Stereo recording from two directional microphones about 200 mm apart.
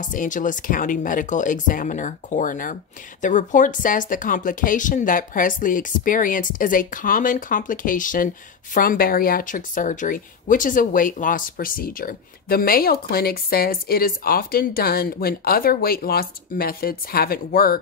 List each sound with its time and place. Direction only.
0.0 s a woman's voice: 40° left (ahead or behind)